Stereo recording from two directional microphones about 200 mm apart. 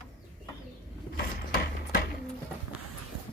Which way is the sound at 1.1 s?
50° left (ahead or behind).